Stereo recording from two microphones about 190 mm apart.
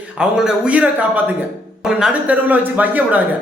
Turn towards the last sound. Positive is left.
turn(degrees=-10)  # may be behind; listen again after turning